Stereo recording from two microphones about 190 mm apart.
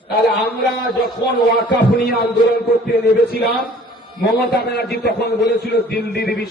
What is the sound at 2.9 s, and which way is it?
A man's voice, 55° left (ahead or behind).